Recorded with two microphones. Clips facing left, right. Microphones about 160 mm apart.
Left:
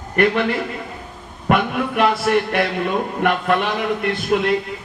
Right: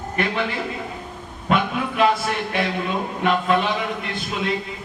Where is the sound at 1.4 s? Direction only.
55° left (ahead or behind).